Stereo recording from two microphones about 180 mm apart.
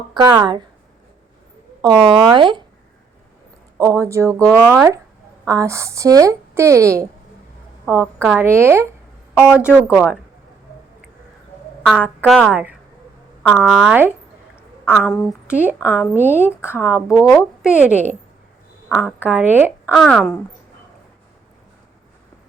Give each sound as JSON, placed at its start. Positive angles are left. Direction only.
{"t": 0.1, "sound": "speech", "side_deg": -20}
{"t": 1.8, "sound": "speech", "side_deg": -25}
{"t": 3.8, "sound": "a woman's voice", "side_deg": -15}
{"t": 9.5, "sound": "speech", "side_deg": 15}
{"t": 9.9, "sound": "a woman's voice", "side_deg": -5}
{"t": 11.9, "sound": "a woman's voice", "side_deg": -5}
{"t": 18.9, "sound": "a woman's voice", "side_deg": -5}
{"t": 19.9, "sound": "a woman's voice", "side_deg": 0}